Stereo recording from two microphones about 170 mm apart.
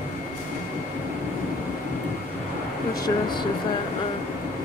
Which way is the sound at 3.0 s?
25° left (ahead or behind).